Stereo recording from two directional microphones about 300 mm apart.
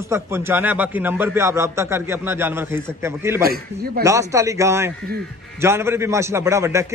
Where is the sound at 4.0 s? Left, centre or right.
Centre.